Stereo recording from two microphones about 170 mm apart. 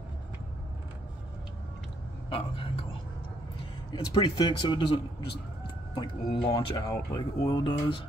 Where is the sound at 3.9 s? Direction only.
25° left (ahead or behind).